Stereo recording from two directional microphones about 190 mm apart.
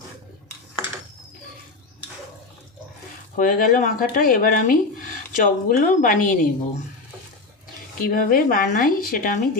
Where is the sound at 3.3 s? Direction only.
45° left (ahead or behind).